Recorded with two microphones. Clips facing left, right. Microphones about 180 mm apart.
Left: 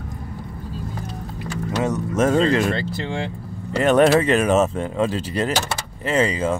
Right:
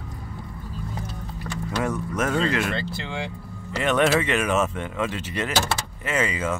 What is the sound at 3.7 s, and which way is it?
Speech, 40° left (ahead or behind).